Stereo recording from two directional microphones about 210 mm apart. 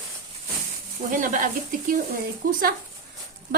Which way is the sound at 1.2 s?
40° right (ahead or behind).